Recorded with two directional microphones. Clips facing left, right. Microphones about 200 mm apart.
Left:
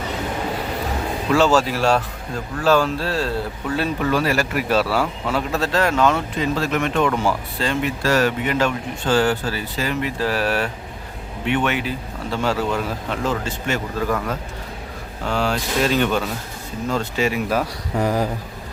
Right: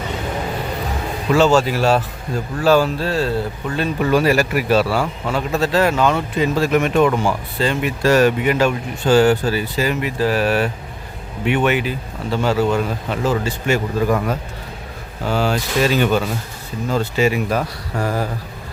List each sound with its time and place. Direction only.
1.3 s speech: centre (ahead or behind)
4.1 s speech: 15° right (ahead or behind)
4.7 s speech: centre (ahead or behind)
7.9 s speech: 15° right (ahead or behind); by 18.0 s 5° left (ahead or behind)
18.0 s a sound: 15° left (ahead or behind)